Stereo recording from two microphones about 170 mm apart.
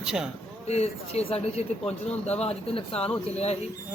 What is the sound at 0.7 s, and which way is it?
Speech, 40° left (ahead or behind).